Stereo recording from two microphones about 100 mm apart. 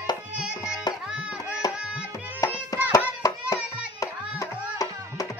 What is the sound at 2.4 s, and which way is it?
Music, 35° left (ahead or behind).